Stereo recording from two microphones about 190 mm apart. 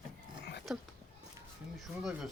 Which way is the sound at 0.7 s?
Centre (ahead or behind).